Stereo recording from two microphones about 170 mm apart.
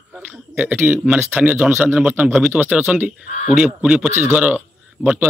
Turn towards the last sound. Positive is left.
turn(degrees=-10)  # may be behind; listen again after turning